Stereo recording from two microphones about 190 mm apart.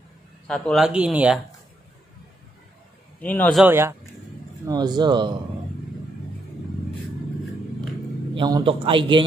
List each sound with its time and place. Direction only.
0.5 s speech: centre (ahead or behind)
3.2 s speech: 10° left (ahead or behind)
3.6 s a man's voice: 10° right (ahead or behind)
8.4 s a man's voice: 25° right (ahead or behind)